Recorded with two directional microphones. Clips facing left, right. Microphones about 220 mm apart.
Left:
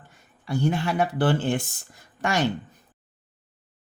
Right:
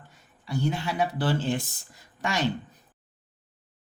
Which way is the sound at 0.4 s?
55° left (ahead or behind).